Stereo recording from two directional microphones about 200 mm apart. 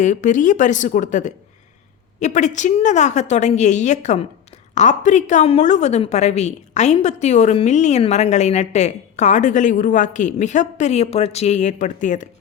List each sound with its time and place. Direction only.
0.0 s a woman's voice: 40° left (ahead or behind)